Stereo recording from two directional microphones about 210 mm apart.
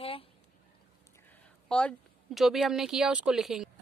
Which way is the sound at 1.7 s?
5° left (ahead or behind).